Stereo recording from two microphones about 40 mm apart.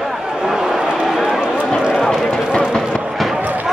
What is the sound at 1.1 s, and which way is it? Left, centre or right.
Run, centre.